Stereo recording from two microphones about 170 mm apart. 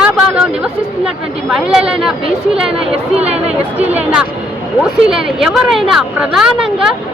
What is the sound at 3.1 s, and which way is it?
Speech, 40° right (ahead or behind).